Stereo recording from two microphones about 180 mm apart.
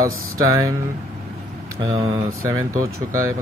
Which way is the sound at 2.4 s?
20° right (ahead or behind).